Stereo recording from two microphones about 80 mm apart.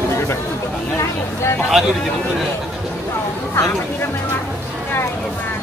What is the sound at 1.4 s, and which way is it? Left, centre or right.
Speech, left.